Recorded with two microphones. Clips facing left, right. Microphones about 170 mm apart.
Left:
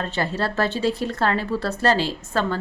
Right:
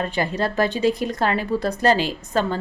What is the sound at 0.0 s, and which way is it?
Speech, 15° right (ahead or behind).